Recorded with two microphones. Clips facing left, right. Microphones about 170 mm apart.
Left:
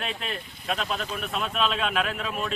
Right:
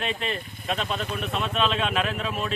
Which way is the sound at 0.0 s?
Centre (ahead or behind).